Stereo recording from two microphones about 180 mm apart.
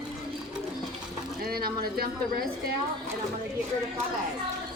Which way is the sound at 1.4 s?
60° right (ahead or behind).